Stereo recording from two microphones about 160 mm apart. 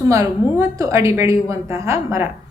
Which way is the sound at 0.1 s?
20° right (ahead or behind).